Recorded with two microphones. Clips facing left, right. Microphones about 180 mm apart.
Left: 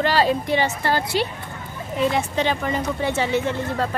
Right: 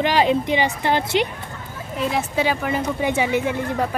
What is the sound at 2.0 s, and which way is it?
Speech, centre (ahead or behind).